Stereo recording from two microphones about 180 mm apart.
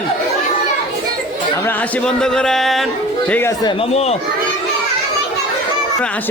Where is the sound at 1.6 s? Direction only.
10° left (ahead or behind).